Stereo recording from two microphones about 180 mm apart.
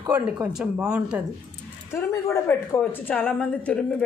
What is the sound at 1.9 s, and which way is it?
A woman's voice, 15° left (ahead or behind).